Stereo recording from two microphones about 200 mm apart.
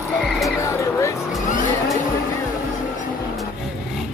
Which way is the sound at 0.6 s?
15° left (ahead or behind).